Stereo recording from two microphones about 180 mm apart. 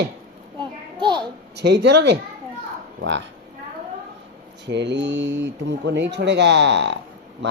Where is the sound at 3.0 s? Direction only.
90° right.